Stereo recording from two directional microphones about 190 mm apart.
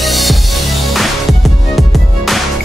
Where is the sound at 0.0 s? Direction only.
Centre (ahead or behind).